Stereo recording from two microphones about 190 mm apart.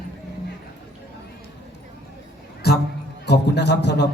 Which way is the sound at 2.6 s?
55° left (ahead or behind).